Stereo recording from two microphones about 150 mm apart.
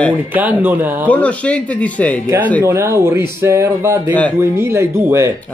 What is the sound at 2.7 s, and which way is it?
Speech, 15° right (ahead or behind).